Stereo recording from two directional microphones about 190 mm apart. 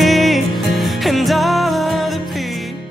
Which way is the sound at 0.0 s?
Centre (ahead or behind).